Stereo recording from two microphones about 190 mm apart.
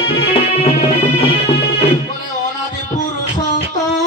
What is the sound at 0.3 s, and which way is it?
Music, 30° left (ahead or behind).